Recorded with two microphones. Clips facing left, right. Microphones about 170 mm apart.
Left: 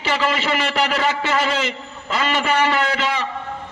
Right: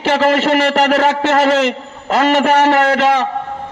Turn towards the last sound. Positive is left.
turn(degrees=-65)  # may be behind; listen again after turning